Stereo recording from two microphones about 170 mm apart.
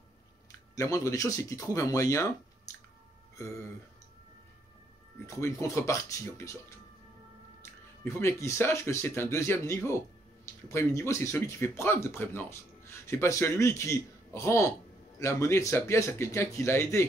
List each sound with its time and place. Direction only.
0.7 s speech: 20° left (ahead or behind)
5.2 s speech: 15° left (ahead or behind)
8.0 s speech: 15° left (ahead or behind)